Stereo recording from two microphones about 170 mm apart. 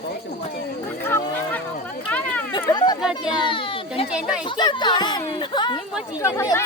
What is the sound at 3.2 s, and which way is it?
A child's voice, 30° left (ahead or behind).